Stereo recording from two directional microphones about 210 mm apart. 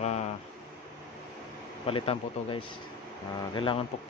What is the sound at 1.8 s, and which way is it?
Speech, 25° left (ahead or behind).